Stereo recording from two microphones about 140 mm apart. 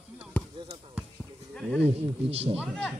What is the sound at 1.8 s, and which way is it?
Speech, 45° right (ahead or behind).